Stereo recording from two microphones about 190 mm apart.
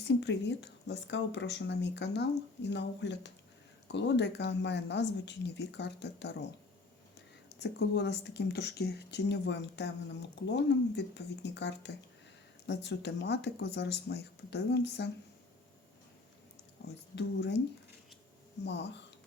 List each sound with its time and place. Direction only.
0.0 s speech: 65° left (ahead or behind)
7.6 s speech: 60° left (ahead or behind)
17.2 s speech: 60° left (ahead or behind)
18.6 s speech: 65° left (ahead or behind)